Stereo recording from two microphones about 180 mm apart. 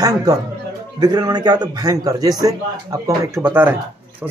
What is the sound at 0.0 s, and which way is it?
A man's voice, 20° right (ahead or behind).